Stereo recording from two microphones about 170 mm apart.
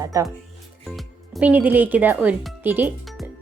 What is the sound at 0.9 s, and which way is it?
Speech, 5° right (ahead or behind).